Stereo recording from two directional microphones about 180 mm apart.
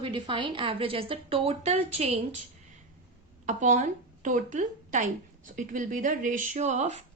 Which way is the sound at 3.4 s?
40° right (ahead or behind).